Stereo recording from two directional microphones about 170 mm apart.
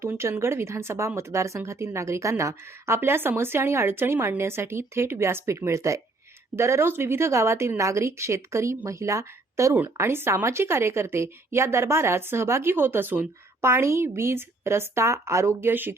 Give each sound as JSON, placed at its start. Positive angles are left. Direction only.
{"t": 0.0, "sound": "speech", "side_deg": -15}